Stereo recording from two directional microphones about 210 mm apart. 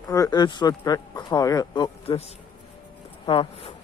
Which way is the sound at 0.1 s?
15° left (ahead or behind).